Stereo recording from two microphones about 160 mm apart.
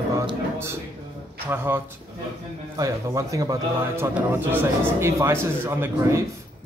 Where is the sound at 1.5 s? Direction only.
15° right (ahead or behind).